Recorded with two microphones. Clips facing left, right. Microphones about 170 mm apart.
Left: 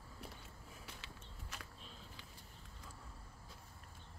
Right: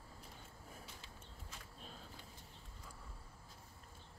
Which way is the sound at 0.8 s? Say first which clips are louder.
Left 1 dB; 80° left.